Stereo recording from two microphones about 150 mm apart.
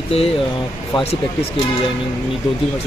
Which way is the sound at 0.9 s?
40° left (ahead or behind).